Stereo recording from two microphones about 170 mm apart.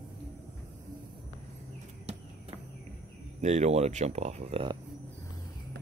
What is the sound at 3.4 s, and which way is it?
Speech, 45° right (ahead or behind).